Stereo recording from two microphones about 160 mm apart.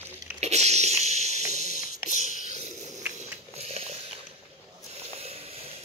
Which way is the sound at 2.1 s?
50° left (ahead or behind).